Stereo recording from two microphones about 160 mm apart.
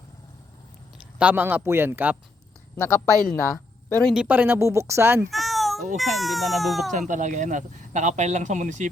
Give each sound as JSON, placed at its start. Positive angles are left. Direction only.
{"t": 0.9, "sound": "speech", "side_deg": -10}
{"t": 2.7, "sound": "a woman's voice", "side_deg": 15}
{"t": 3.3, "sound": "a sound", "side_deg": 15}
{"t": 4.0, "sound": "speech", "side_deg": -5}
{"t": 5.3, "sound": "meow", "side_deg": 0}
{"t": 6.0, "sound": "speech", "side_deg": 0}
{"t": 7.1, "sound": "speech", "side_deg": -50}